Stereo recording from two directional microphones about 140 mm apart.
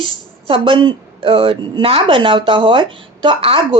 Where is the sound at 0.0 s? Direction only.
40° right (ahead or behind).